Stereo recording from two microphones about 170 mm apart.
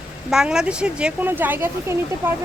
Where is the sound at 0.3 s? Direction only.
5° right (ahead or behind).